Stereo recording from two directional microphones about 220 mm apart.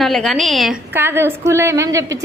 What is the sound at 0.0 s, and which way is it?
A woman's voice, centre (ahead or behind).